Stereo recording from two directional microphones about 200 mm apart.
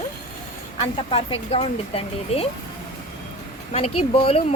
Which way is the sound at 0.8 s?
25° left (ahead or behind).